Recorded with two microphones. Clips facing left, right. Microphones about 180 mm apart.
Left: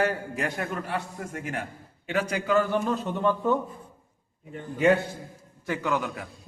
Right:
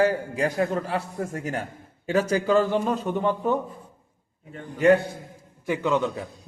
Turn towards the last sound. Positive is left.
turn(degrees=-25)  # may be behind; listen again after turning